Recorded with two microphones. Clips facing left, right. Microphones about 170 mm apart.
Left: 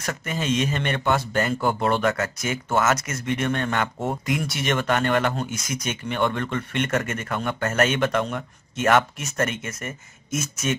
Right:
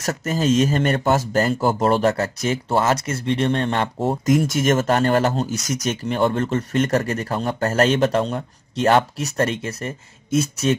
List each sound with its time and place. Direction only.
0.0 s speech: 40° right (ahead or behind)